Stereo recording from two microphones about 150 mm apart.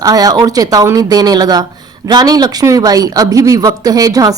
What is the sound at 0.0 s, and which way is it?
Speech, 25° right (ahead or behind).